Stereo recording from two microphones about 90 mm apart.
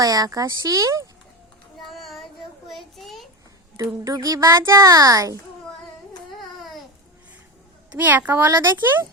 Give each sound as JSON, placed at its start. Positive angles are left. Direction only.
{"t": 0.0, "sound": "a child's voice", "side_deg": -45}
{"t": 1.9, "sound": "child singing", "side_deg": 0}
{"t": 3.8, "sound": "a child's voice", "side_deg": -40}
{"t": 6.3, "sound": "baby cry", "side_deg": 0}
{"t": 7.9, "sound": "speech", "side_deg": -20}